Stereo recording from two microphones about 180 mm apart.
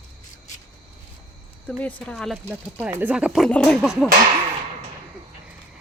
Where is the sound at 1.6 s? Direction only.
10° left (ahead or behind).